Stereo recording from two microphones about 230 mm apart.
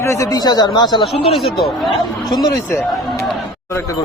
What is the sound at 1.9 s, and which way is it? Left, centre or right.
Speech, centre.